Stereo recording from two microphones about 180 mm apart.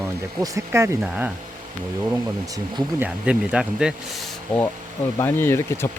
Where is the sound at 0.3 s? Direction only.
15° right (ahead or behind).